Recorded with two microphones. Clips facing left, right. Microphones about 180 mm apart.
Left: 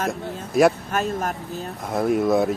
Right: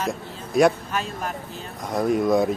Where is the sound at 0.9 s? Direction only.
45° left (ahead or behind).